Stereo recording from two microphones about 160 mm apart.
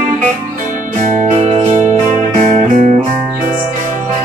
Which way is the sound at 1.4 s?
45° right (ahead or behind).